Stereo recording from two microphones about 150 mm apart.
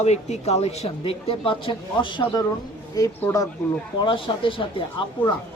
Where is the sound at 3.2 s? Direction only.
15° left (ahead or behind).